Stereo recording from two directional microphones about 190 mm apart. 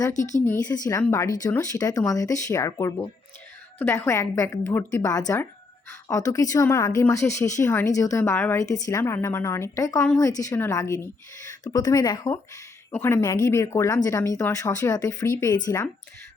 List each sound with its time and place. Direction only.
0.1 s speech: 40° left (ahead or behind)
0.4 s speech: 15° left (ahead or behind)